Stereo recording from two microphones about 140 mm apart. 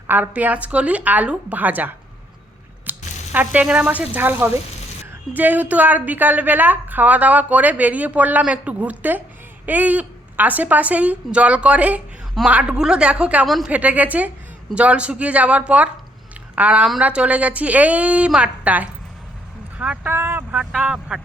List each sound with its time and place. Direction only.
0.1 s a woman's voice: 10° right (ahead or behind)
2.9 s mechanisms: 15° right (ahead or behind)
3.3 s a woman's voice: 10° right (ahead or behind)